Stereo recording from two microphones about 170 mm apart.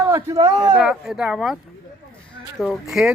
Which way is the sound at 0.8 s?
5° right (ahead or behind).